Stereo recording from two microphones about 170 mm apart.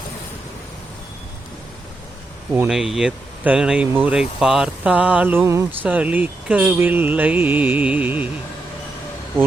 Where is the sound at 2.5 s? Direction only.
5° right (ahead or behind).